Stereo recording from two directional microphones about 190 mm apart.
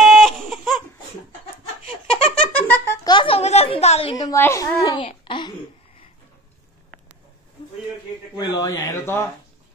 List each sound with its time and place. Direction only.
0.0 s baby cry: centre (ahead or behind)
2.2 s giggle: 5° left (ahead or behind); by 5.5 s 25° left (ahead or behind)
8.4 s speech: 15° left (ahead or behind)